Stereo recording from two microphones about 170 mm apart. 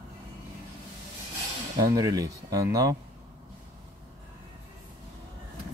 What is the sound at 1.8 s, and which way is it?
Speech, 20° right (ahead or behind).